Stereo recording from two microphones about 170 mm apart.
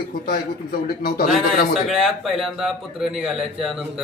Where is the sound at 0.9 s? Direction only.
60° left (ahead or behind).